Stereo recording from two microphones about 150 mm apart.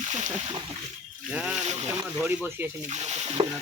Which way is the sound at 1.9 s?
15° right (ahead or behind).